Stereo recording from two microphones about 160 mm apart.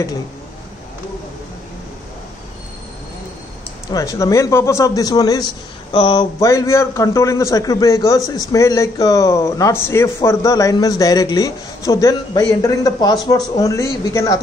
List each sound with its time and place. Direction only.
3.9 s speech: 20° left (ahead or behind)